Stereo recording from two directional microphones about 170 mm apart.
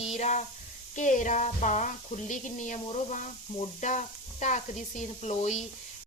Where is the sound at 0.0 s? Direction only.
40° left (ahead or behind).